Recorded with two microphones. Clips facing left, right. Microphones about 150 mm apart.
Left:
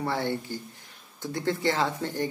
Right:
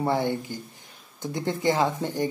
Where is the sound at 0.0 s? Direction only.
20° right (ahead or behind).